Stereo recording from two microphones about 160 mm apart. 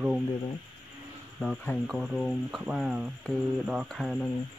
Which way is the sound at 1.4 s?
Centre (ahead or behind).